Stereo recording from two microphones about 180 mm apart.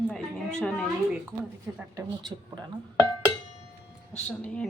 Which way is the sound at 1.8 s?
20° right (ahead or behind).